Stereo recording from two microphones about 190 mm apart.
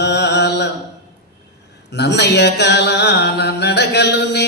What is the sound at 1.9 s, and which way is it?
Mantra, 65° left (ahead or behind).